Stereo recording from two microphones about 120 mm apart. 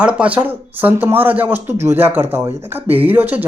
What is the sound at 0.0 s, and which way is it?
Speech, 10° right (ahead or behind).